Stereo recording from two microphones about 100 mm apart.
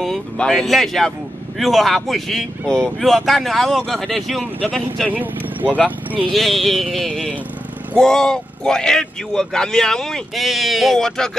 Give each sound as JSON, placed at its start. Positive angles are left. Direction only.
{"t": 0.0, "sound": "speech", "side_deg": 0}
{"t": 5.1, "sound": "speech", "side_deg": -15}
{"t": 6.3, "sound": "speech", "side_deg": 0}
{"t": 7.1, "sound": "speech", "side_deg": -10}
{"t": 8.0, "sound": "speech", "side_deg": 5}